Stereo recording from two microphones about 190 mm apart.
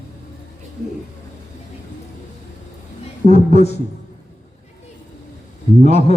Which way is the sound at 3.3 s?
35° left (ahead or behind).